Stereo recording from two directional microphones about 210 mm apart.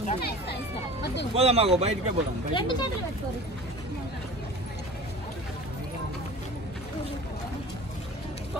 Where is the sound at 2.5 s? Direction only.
20° left (ahead or behind).